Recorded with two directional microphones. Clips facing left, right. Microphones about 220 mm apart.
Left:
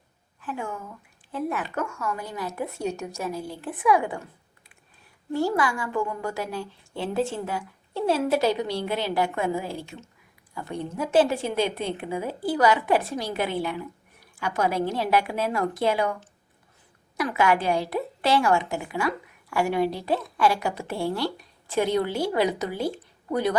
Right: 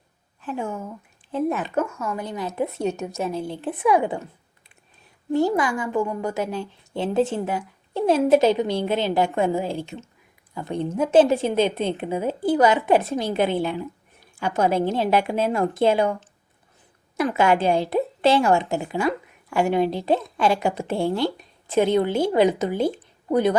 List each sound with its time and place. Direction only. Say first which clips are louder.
0.4 s a woman's voice: right 4 dB; 25° right (ahead or behind)
5.3 s a woman's voice: right 4 dB; 20° right (ahead or behind)
17.2 s a woman's voice: right 3 dB; 25° right (ahead or behind)